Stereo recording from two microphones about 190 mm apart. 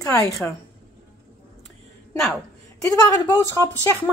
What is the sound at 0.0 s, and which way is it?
Speech, 15° left (ahead or behind).